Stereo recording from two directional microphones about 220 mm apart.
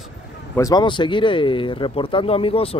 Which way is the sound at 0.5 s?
15° left (ahead or behind).